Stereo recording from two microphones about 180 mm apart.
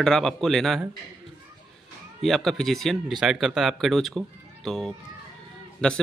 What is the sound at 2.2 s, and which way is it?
Speech, centre (ahead or behind).